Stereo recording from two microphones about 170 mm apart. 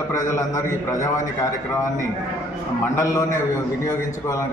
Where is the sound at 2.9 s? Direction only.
15° left (ahead or behind).